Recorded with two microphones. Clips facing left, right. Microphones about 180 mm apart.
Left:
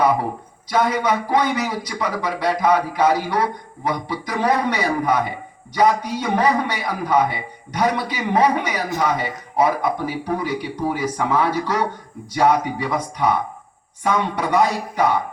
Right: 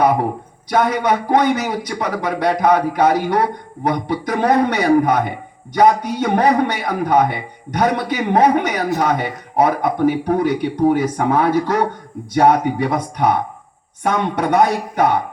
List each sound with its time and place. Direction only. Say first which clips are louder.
0.7 s a man's voice: right 3 dB; 60° right (ahead or behind)